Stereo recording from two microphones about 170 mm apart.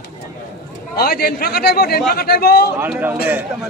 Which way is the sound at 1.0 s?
65° left (ahead or behind).